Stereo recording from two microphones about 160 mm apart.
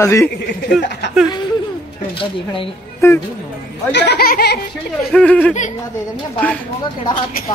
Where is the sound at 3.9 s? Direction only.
90° left.